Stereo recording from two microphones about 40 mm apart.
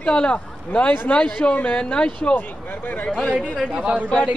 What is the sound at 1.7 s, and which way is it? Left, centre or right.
Speech, left.